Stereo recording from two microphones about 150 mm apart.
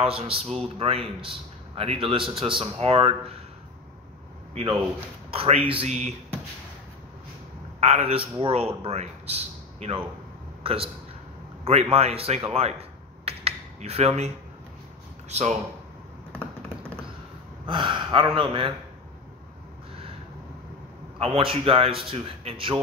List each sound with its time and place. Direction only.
0.0 s a man's voice: 40° right (ahead or behind)
5.3 s a man's voice: 40° right (ahead or behind)
7.8 s a man's voice: 40° right (ahead or behind)
12.5 s a sound: 40° right (ahead or behind)
15.2 s speech: 50° right (ahead or behind)
17.6 s a man's voice: 35° right (ahead or behind)
21.2 s a man's voice: 40° right (ahead or behind)